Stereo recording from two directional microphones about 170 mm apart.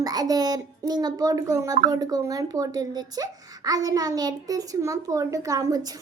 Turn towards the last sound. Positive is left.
turn(degrees=-20)  # may be behind; listen again after turning